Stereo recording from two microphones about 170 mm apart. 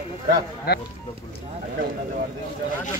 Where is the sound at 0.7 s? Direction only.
70° left (ahead or behind).